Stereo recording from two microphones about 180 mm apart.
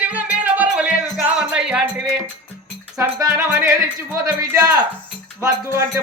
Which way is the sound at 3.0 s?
15° right (ahead or behind).